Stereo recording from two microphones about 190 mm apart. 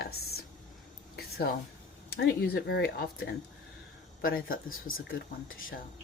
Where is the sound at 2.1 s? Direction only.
55° left (ahead or behind).